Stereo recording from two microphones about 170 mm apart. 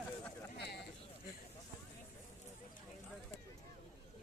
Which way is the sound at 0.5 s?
80° left.